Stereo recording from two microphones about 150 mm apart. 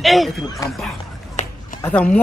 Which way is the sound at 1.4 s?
45° left (ahead or behind).